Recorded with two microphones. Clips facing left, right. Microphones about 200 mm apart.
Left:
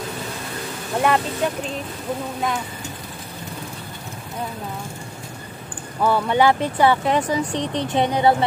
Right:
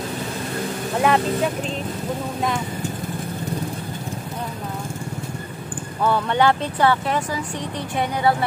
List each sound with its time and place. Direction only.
1.0 s speech: centre (ahead or behind)
6.0 s speech: 10° left (ahead or behind)